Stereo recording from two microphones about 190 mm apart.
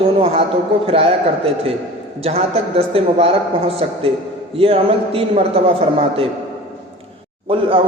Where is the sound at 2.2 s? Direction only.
30° right (ahead or behind).